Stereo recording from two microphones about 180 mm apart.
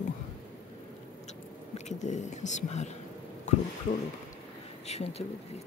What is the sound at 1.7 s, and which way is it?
Speech, 40° left (ahead or behind).